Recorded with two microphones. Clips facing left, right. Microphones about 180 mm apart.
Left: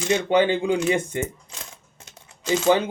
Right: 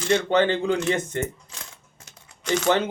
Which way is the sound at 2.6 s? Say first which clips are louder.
Left 3 dB; 10° left (ahead or behind).